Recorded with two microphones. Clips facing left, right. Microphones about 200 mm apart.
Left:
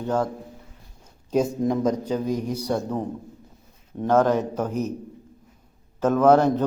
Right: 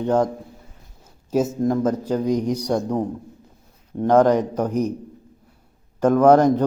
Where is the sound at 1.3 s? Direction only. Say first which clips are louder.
Right 2 dB; 5° right (ahead or behind).